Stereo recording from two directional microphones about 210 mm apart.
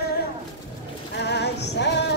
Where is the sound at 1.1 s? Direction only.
55° left (ahead or behind).